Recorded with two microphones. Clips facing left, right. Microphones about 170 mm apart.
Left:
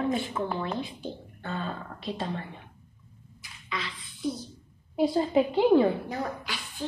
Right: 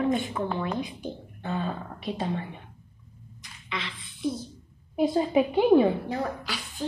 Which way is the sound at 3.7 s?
25° right (ahead or behind).